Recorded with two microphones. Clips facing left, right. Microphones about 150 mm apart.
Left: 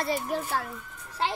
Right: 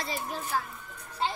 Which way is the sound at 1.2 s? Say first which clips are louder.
Left 2 dB; 75° left (ahead or behind).